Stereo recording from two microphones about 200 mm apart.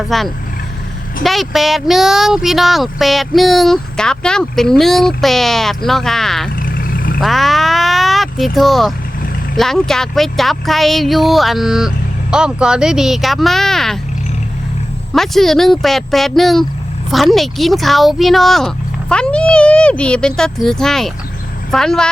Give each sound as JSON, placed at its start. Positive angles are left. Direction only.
{"t": 0.1, "sound": "speech", "side_deg": 0}
{"t": 6.6, "sound": "vehicle", "side_deg": 45}
{"t": 7.2, "sound": "a sound", "side_deg": 0}
{"t": 8.5, "sound": "speech", "side_deg": 0}
{"t": 15.1, "sound": "speech", "side_deg": 0}